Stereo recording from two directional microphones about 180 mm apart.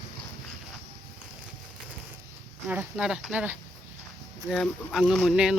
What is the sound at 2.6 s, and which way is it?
Speech, 5° right (ahead or behind).